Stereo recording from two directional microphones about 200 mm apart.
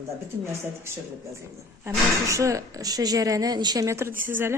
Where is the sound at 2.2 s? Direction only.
15° right (ahead or behind).